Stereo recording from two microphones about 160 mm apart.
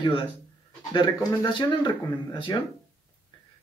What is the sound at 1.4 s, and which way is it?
Speech, 25° left (ahead or behind).